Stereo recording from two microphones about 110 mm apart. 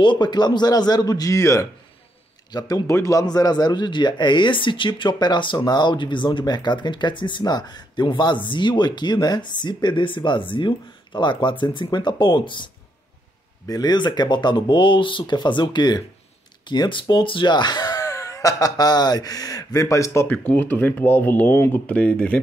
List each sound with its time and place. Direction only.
0.0 s a man's voice: 45° left (ahead or behind)
13.7 s a man's voice: 40° left (ahead or behind); by 22.4 s 10° left (ahead or behind)